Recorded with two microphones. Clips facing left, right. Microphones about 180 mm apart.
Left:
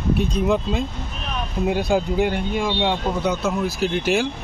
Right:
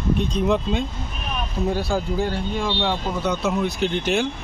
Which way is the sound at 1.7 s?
15° left (ahead or behind).